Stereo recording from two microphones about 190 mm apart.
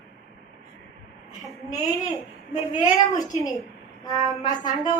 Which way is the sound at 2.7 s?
20° left (ahead or behind).